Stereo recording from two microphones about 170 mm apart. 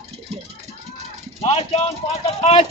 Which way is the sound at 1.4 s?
40° left (ahead or behind).